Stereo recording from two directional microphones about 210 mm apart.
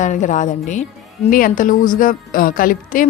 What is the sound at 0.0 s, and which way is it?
A woman's voice, 35° left (ahead or behind).